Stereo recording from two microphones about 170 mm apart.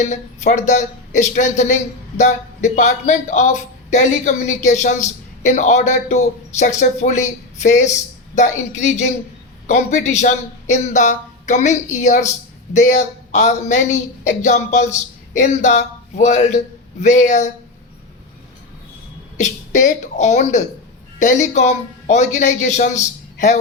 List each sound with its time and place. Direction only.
0.0 s a woman's voice: 45° left (ahead or behind)
19.4 s a woman's voice: 45° left (ahead or behind)